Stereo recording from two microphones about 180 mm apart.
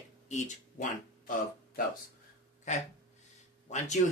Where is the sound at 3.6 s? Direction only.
40° left (ahead or behind).